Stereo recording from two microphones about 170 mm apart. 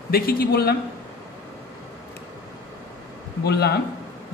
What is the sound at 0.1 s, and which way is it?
Speech, 60° left (ahead or behind).